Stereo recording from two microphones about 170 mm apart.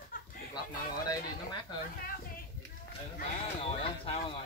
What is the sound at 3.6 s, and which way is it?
Speech, 35° left (ahead or behind).